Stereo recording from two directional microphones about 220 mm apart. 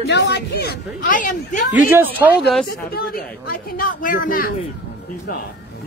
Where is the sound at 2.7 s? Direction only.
45° left (ahead or behind).